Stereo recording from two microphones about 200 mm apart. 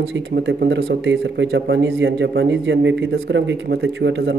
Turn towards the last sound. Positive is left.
turn(degrees=-65)  # may be behind; listen again after turning